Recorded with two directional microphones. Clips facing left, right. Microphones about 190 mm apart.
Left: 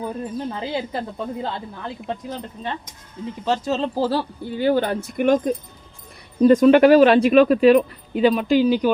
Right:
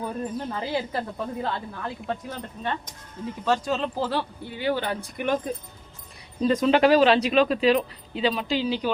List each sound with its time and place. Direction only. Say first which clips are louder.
0.0 s speech: left 3 dB; 20° left (ahead or behind)
3.4 s speech: left 3 dB; 25° left (ahead or behind); by 8.9 s 50° left (ahead or behind)